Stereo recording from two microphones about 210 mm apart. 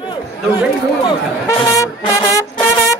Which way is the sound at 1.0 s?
20° left (ahead or behind).